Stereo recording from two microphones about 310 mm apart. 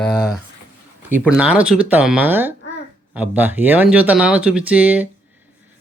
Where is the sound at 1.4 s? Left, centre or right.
Centre.